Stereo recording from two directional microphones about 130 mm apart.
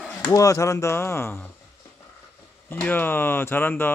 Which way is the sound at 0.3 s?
25° left (ahead or behind).